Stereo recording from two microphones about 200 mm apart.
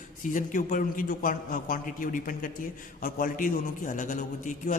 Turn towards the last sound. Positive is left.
turn(degrees=40)  # may be behind; listen again after turning